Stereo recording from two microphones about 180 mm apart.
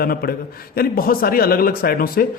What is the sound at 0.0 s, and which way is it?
A man's voice, 55° left (ahead or behind).